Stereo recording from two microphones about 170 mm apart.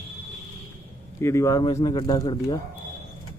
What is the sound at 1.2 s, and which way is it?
A man's voice, 15° left (ahead or behind).